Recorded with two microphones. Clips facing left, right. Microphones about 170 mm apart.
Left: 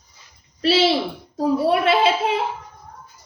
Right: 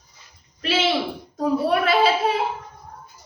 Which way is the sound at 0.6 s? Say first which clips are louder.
Left 5 dB; 35° left (ahead or behind).